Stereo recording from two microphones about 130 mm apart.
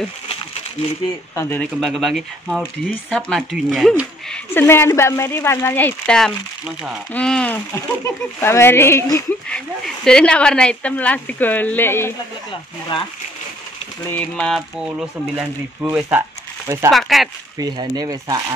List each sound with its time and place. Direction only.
1.3 s speech: 20° left (ahead or behind)
1.6 s speech: centre (ahead or behind)
2.6 s speech: 10° left (ahead or behind)
4.3 s speech: 15° left (ahead or behind)
9.5 s speech: 5° left (ahead or behind)
14.1 s speech: 5° left (ahead or behind); by 16.0 s 15° right (ahead or behind)
16.2 s crumpling: 25° right (ahead or behind)
16.9 s speech: centre (ahead or behind)
17.6 s speech: 30° right (ahead or behind)